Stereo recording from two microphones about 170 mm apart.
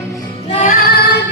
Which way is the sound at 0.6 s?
60° left (ahead or behind).